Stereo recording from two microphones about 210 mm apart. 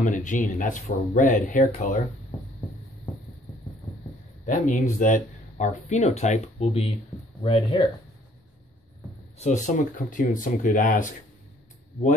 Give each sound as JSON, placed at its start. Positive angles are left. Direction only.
{"t": 0.0, "sound": "speech", "side_deg": 40}
{"t": 4.5, "sound": "speech", "side_deg": 35}
{"t": 9.4, "sound": "speech", "side_deg": 35}